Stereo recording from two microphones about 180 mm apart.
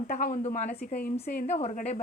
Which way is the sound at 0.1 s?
45° left (ahead or behind).